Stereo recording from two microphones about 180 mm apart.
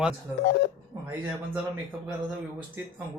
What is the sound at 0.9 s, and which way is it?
Speech, 20° right (ahead or behind).